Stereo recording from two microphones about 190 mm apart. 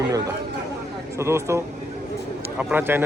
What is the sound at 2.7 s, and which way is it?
Speech, 10° right (ahead or behind).